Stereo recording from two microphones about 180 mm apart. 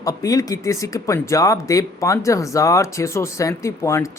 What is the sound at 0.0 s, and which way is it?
A man's voice, 20° left (ahead or behind).